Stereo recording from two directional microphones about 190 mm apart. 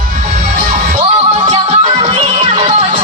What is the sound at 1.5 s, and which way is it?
Music, 30° right (ahead or behind).